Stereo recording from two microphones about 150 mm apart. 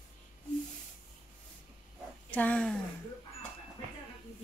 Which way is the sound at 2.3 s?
10° left (ahead or behind).